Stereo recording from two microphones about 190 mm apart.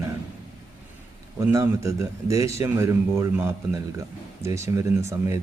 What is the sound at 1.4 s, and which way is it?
Speech, 15° right (ahead or behind).